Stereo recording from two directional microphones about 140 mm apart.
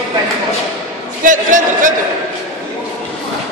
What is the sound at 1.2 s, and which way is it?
Speech, 70° right (ahead or behind).